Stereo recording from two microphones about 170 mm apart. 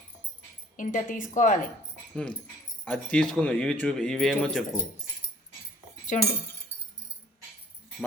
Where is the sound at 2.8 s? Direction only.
10° left (ahead or behind).